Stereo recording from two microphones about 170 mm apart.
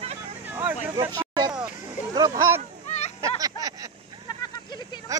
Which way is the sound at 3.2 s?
20° right (ahead or behind).